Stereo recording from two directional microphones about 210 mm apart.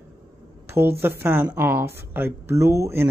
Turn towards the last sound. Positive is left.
turn(degrees=-10)  # may be behind; listen again after turning